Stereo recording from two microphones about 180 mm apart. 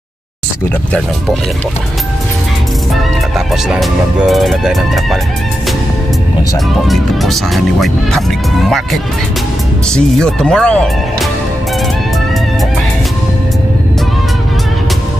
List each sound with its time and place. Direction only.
3.3 s speech: centre (ahead or behind)
6.9 s speech: centre (ahead or behind)